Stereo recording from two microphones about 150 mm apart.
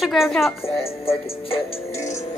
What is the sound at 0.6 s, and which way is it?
Music, 40° left (ahead or behind).